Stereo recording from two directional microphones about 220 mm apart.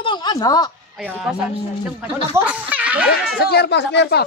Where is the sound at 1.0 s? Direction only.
5° right (ahead or behind).